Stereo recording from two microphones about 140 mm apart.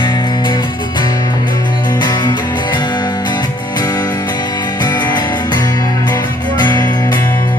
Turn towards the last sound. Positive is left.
turn(degrees=30)  # may be behind; listen again after turning